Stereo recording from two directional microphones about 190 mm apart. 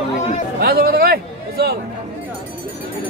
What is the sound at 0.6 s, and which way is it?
Speech, 55° right (ahead or behind).